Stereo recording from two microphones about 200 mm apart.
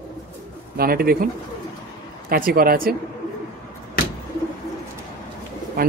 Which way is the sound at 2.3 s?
45° right (ahead or behind).